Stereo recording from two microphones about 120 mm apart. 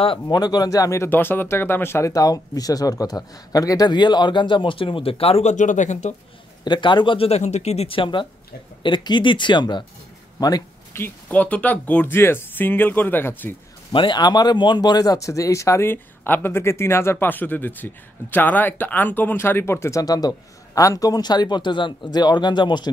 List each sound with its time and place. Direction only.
0.0 s speech: 40° left (ahead or behind); by 6.1 s 85° left
6.6 s speech: 40° left (ahead or behind)
10.4 s a sound: 30° left (ahead or behind)
11.0 s speech: 15° left (ahead or behind)
13.9 s speech: 40° left (ahead or behind)